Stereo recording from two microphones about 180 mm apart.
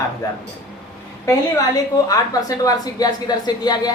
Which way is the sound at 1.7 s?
20° left (ahead or behind).